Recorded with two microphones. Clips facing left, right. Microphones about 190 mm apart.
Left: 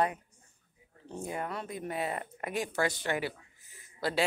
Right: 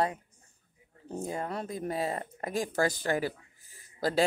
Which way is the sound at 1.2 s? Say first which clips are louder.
Right 2 dB; 30° right (ahead or behind).